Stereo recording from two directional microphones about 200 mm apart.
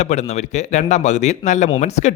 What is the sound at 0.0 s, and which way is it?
Speech, 35° left (ahead or behind).